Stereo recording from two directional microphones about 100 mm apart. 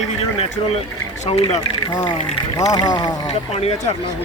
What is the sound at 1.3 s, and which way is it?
Speech, 90° left.